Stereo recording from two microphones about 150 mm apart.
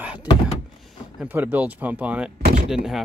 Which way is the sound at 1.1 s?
10° right (ahead or behind).